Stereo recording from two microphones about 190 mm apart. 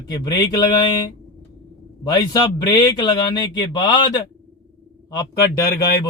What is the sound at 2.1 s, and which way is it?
A man's voice, 20° left (ahead or behind).